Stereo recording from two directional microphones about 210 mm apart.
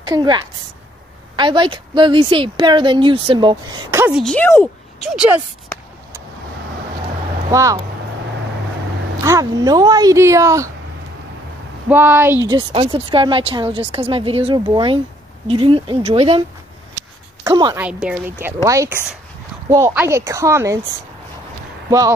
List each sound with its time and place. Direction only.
0.0 s a woman's voice: 20° right (ahead or behind)
4.0 s speech: centre (ahead or behind)
5.0 s speech: 5° right (ahead or behind)
7.5 s speech: 15° right (ahead or behind)
9.2 s speech: 15° right (ahead or behind)
11.9 s speech: 10° right (ahead or behind)
12.4 s a woman's voice: 20° right (ahead or behind)
17.7 s speech: 5° right (ahead or behind)